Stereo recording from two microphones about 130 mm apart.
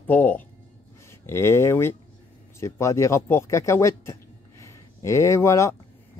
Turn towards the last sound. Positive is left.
turn(degrees=20)  # may be behind; listen again after turning